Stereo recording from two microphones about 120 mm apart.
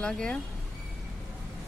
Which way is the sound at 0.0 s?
5° left (ahead or behind).